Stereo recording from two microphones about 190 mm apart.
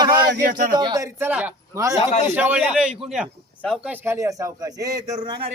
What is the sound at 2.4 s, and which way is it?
A man's voice, 10° right (ahead or behind).